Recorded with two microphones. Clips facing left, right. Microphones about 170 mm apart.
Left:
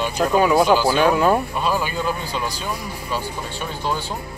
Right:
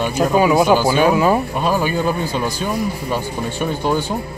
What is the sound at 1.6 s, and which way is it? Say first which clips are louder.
A man's voice: right 4 dB; 50° right (ahead or behind).